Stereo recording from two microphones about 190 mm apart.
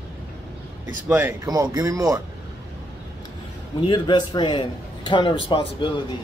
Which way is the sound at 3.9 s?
25° left (ahead or behind).